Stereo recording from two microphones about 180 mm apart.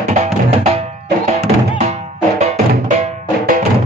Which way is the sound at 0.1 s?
40° right (ahead or behind).